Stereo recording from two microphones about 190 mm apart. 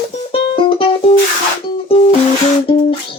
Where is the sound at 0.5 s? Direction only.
30° left (ahead or behind).